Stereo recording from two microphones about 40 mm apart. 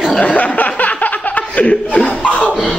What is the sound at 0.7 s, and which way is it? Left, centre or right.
Laughter, left.